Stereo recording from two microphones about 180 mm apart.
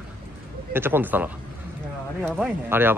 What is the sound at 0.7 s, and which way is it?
A man's voice, 10° right (ahead or behind).